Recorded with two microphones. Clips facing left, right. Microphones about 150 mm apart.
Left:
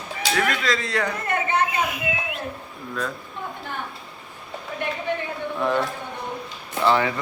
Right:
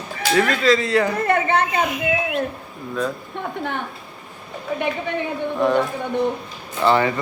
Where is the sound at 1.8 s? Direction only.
5° left (ahead or behind).